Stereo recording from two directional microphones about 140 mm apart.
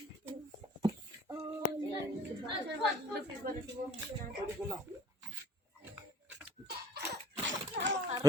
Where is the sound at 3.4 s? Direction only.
90° right.